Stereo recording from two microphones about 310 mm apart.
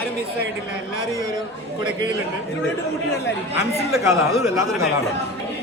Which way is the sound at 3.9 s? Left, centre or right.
Centre.